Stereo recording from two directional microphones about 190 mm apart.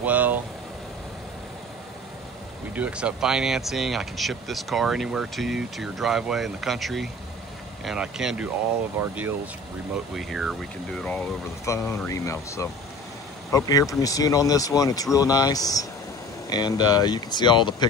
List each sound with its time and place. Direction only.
0.0 s vehicle: 10° right (ahead or behind)
2.7 s speech: 5° right (ahead or behind)
9.9 s speech: centre (ahead or behind); by 17.8 s 25° left (ahead or behind)